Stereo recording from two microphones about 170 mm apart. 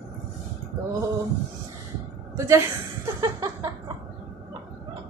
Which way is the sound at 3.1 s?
20° right (ahead or behind).